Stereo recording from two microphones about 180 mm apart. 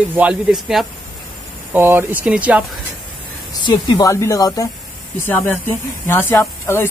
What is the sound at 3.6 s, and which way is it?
Speech, 25° left (ahead or behind).